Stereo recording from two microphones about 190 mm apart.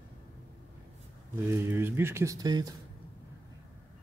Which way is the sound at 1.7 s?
10° right (ahead or behind).